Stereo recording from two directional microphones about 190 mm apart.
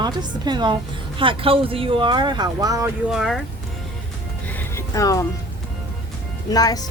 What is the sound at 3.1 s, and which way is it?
Speech, centre (ahead or behind).